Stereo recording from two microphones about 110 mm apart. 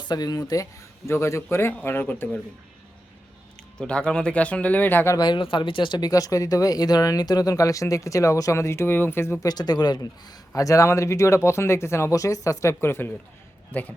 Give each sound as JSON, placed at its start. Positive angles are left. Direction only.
{"t": 0.0, "sound": "a man's voice", "side_deg": 40}
{"t": 3.8, "sound": "speech", "side_deg": 10}
{"t": 5.1, "sound": "speech", "side_deg": 45}
{"t": 9.5, "sound": "a man's voice", "side_deg": 40}